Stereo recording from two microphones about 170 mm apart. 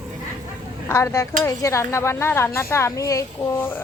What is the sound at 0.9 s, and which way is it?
Speech, 15° left (ahead or behind).